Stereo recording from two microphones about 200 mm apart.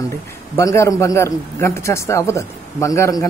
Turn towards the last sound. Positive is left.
turn(degrees=15)  # may be behind; listen again after turning